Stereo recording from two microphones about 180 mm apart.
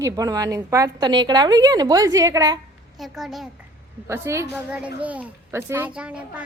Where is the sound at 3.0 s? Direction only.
Centre (ahead or behind).